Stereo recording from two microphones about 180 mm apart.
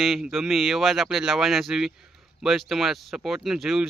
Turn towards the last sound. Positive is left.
turn(degrees=0)  # may be behind; listen again after turning